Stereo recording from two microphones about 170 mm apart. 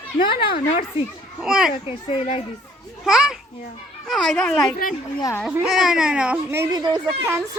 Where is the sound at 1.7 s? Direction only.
35° left (ahead or behind).